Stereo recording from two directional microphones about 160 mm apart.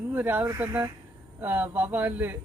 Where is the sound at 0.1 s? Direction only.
10° right (ahead or behind).